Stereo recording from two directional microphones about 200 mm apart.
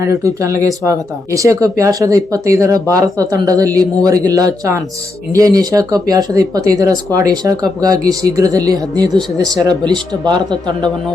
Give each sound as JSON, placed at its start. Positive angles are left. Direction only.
{"t": 0.0, "sound": "speech", "side_deg": -15}